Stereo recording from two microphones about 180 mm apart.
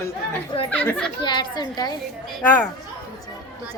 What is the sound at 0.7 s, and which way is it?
Speech, 10° left (ahead or behind).